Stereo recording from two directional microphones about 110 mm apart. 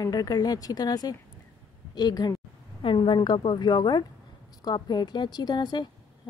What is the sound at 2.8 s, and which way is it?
A woman's voice, 50° left (ahead or behind).